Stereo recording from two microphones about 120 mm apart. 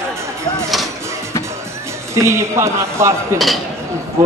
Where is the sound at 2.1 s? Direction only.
25° right (ahead or behind).